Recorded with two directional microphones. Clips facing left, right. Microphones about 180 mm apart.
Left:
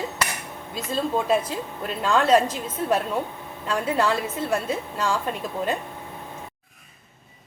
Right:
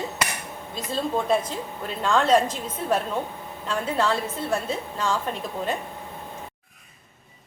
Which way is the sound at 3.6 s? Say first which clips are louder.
Left 1 dB; 10° left (ahead or behind).